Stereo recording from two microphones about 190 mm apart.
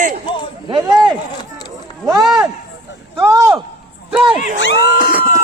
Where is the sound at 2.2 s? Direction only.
5° right (ahead or behind).